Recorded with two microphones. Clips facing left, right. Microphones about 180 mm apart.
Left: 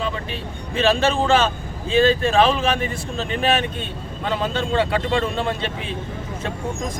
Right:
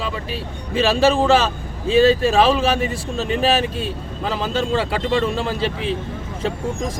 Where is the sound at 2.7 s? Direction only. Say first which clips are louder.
Right 3 dB; 30° right (ahead or behind).